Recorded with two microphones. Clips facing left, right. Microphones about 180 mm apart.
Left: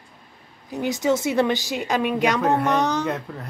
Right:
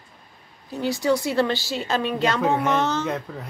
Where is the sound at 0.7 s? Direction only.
20° left (ahead or behind).